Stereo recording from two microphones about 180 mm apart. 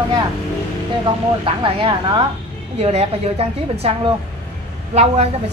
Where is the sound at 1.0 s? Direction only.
25° right (ahead or behind).